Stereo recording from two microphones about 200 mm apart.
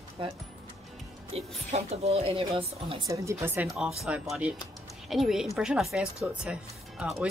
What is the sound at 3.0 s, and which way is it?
Speech, 15° right (ahead or behind).